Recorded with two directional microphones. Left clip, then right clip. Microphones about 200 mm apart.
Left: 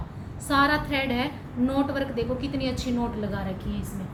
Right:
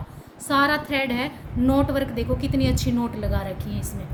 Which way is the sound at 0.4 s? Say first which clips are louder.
Right 2 dB; 65° right (ahead or behind).